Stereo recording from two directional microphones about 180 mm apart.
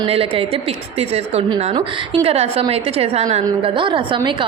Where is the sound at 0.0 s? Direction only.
30° right (ahead or behind).